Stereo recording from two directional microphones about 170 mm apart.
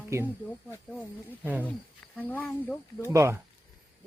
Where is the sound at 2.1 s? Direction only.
10° left (ahead or behind).